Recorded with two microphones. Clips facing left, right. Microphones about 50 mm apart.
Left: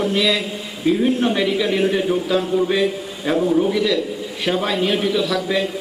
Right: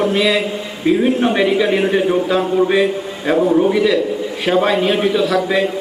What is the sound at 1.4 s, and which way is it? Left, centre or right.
A man's voice, right.